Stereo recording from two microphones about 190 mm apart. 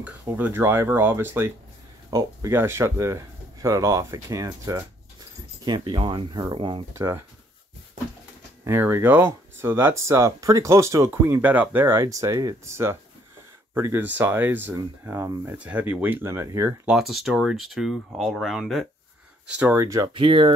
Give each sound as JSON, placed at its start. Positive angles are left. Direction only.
{"t": 0.0, "sound": "speech", "side_deg": -10}
{"t": 7.0, "sound": "speech", "side_deg": -15}
{"t": 8.6, "sound": "speech", "side_deg": -10}
{"t": 16.9, "sound": "speech", "side_deg": 0}